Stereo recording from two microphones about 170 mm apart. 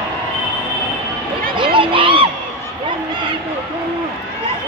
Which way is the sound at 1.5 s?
30° right (ahead or behind).